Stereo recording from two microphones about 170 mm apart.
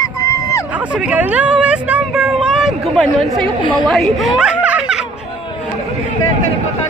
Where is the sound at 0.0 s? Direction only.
20° left (ahead or behind).